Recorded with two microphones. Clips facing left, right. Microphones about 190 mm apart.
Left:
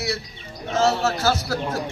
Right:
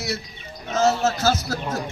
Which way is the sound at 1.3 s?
20° right (ahead or behind).